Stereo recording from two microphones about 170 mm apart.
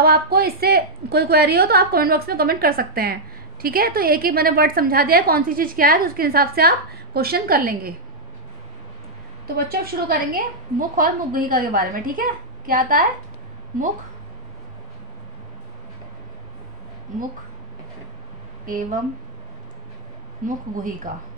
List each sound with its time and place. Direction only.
0.0 s a woman's voice: 65° right (ahead or behind)
9.6 s a woman's voice: 60° right (ahead or behind)
18.7 s speech: 50° right (ahead or behind)
20.4 s speech: 50° right (ahead or behind)